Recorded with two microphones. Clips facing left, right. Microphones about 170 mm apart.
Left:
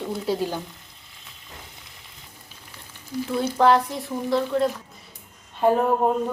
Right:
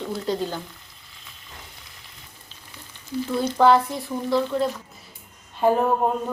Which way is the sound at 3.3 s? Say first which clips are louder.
Right 1 dB; centre (ahead or behind).